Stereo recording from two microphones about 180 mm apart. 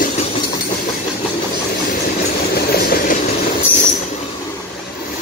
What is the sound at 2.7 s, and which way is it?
Train, 55° left (ahead or behind).